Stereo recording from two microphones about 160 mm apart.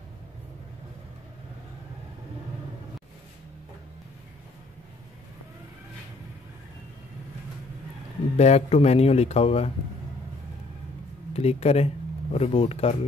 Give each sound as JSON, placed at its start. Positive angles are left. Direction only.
{"t": 8.4, "sound": "speech", "side_deg": 45}
{"t": 11.3, "sound": "speech", "side_deg": 40}